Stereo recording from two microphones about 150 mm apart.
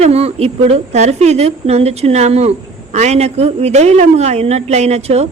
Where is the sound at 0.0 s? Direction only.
45° right (ahead or behind).